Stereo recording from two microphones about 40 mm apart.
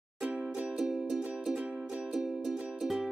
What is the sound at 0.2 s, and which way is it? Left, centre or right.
Music, right.